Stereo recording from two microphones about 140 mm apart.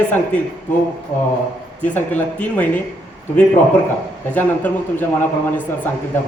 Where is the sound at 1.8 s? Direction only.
10° left (ahead or behind).